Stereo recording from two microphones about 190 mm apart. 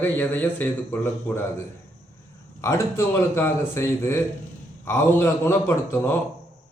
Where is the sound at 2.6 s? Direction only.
15° left (ahead or behind).